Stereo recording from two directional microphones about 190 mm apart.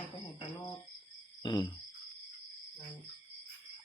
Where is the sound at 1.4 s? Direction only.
20° left (ahead or behind).